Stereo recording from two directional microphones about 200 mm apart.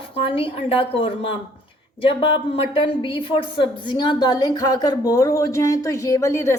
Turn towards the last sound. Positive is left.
turn(degrees=15)  # may be behind; listen again after turning